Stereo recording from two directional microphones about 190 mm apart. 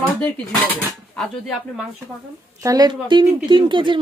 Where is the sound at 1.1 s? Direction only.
Centre (ahead or behind).